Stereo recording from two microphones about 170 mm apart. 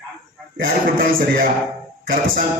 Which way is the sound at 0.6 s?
55° right (ahead or behind).